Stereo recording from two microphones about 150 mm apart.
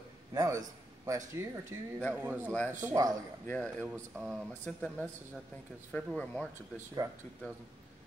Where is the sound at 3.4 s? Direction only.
5° left (ahead or behind).